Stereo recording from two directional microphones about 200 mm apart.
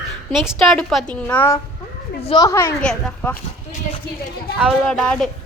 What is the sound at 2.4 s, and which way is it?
Speech, 15° left (ahead or behind).